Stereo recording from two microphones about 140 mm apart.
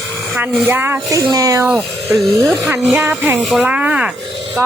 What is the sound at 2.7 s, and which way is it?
Speech, 10° right (ahead or behind).